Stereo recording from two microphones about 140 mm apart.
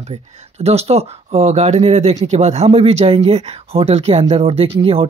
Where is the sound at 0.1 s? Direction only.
45° right (ahead or behind).